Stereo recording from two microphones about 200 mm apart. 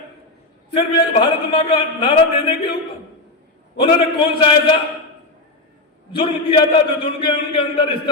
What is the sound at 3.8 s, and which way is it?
Speech, 25° left (ahead or behind).